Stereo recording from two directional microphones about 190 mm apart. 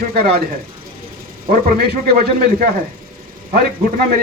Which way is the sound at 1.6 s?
55° right (ahead or behind).